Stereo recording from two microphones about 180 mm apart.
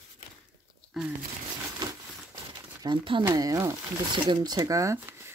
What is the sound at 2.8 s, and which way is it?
Speech, 25° right (ahead or behind).